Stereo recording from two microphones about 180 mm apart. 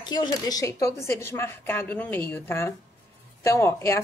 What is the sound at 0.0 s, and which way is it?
Speech, 25° left (ahead or behind).